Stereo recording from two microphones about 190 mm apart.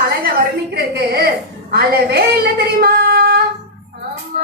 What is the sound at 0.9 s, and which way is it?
A woman's voice, 55° right (ahead or behind).